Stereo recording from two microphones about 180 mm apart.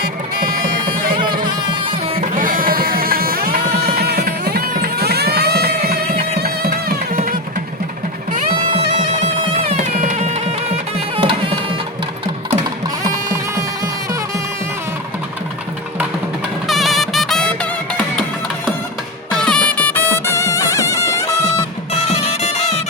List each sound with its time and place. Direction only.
0.0 s speech: 55° right (ahead or behind)
2.2 s music: 45° right (ahead or behind)
9.2 s music: 40° right (ahead or behind)
11.2 s a sound: 30° right (ahead or behind)
16.6 s music: centre (ahead or behind)
19.3 s music: 5° left (ahead or behind)
22.0 s music: 35° left (ahead or behind)